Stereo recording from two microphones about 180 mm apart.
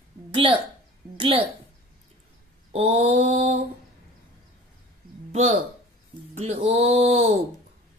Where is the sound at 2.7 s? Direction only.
40° right (ahead or behind).